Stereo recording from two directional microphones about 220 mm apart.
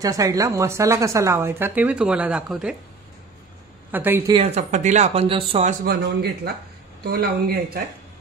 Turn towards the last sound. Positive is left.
turn(degrees=-45)  # may be behind; listen again after turning